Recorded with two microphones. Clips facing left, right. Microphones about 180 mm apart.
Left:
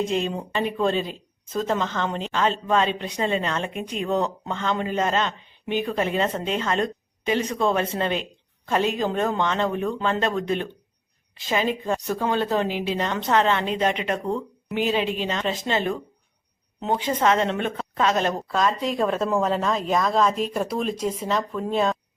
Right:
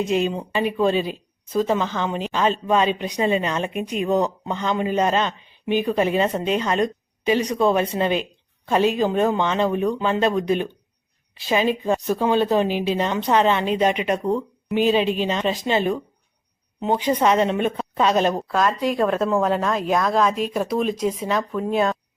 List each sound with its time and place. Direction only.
0.1 s a woman's voice: 5° right (ahead or behind)
18.4 s speech: centre (ahead or behind)